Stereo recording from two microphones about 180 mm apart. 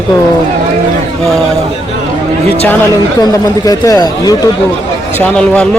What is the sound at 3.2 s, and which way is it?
Speech, 20° left (ahead or behind).